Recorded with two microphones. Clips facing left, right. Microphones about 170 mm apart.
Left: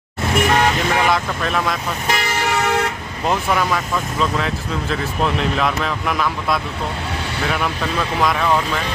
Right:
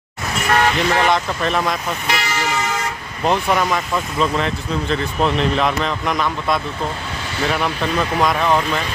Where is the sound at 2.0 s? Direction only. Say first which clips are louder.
Left 3 dB; 50° left (ahead or behind).